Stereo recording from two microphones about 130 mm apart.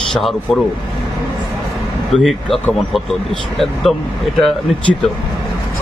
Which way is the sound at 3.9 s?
Centre (ahead or behind).